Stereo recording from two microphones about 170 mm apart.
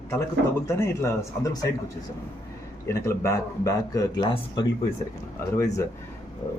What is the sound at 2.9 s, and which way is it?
Speech, 15° left (ahead or behind).